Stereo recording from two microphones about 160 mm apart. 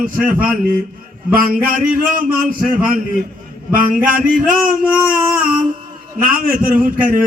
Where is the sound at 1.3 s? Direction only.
60° right (ahead or behind).